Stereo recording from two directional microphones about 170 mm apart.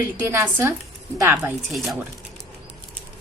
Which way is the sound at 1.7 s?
Centre (ahead or behind).